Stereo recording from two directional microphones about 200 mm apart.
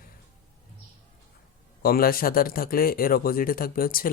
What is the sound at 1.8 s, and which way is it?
Speech, 45° left (ahead or behind).